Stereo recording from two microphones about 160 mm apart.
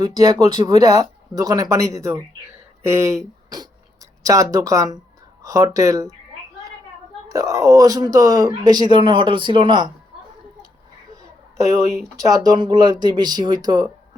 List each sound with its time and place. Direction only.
0.0 s speech: 25° right (ahead or behind)
7.3 s speech: 20° right (ahead or behind)
11.6 s speech: 20° right (ahead or behind)